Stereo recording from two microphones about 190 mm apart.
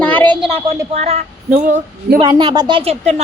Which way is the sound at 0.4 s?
30° right (ahead or behind).